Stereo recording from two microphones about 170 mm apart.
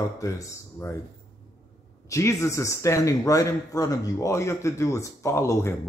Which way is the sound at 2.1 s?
15° left (ahead or behind).